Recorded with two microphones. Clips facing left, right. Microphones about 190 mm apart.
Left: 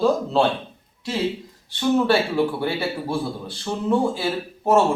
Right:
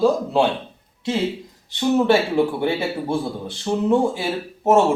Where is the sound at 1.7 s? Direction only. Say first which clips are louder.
Right 2 dB; 20° right (ahead or behind).